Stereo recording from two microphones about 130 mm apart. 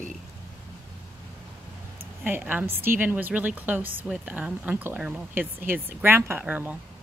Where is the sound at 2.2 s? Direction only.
15° right (ahead or behind).